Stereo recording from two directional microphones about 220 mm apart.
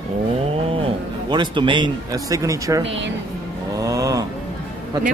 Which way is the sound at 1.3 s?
20° right (ahead or behind).